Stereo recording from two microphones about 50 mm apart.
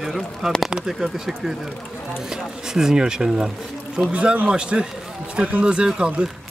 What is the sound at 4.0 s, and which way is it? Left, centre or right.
A man's voice, right.